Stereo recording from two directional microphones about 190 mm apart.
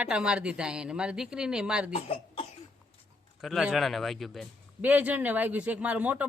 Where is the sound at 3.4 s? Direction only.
Centre (ahead or behind).